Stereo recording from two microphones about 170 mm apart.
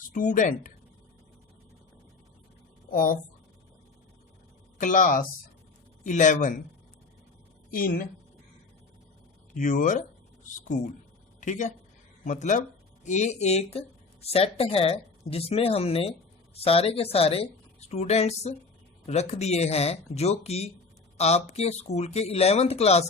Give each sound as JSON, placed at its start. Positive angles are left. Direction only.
{"t": 0.1, "sound": "speech", "side_deg": 50}
{"t": 2.9, "sound": "a woman's voice", "side_deg": 55}
{"t": 4.8, "sound": "speech", "side_deg": 50}
{"t": 7.7, "sound": "a woman's voice", "side_deg": 55}
{"t": 9.6, "sound": "speech", "side_deg": 50}